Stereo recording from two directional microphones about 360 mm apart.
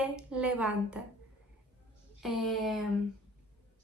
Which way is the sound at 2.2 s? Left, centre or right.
Centre.